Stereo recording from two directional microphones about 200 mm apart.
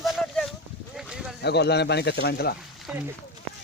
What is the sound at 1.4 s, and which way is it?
Speech, 55° left (ahead or behind).